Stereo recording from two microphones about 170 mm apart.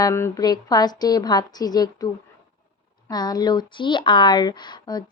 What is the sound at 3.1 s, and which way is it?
A woman's voice, 25° left (ahead or behind).